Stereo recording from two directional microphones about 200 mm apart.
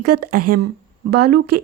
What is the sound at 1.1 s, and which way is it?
Speech, 55° right (ahead or behind).